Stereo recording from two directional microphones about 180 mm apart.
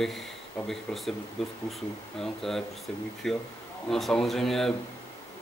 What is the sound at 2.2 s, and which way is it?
A man's voice, centre (ahead or behind).